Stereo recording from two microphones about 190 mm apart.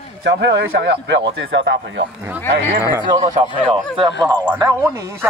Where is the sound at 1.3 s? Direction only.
80° right.